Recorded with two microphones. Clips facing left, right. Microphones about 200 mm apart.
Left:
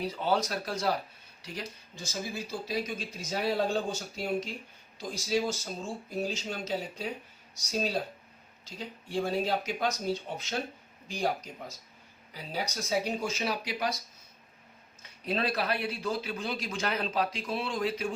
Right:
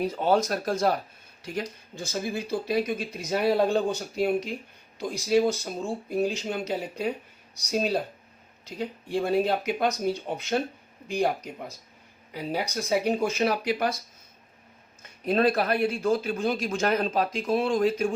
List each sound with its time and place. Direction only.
0.0 s speech: 45° right (ahead or behind)
8.6 s speech: 60° right (ahead or behind)
15.2 s speech: 50° right (ahead or behind)